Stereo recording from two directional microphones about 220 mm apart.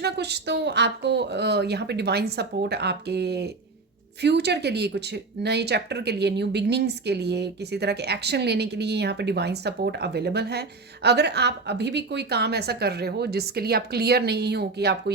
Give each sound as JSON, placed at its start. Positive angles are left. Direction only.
{"t": 0.0, "sound": "speech", "side_deg": -50}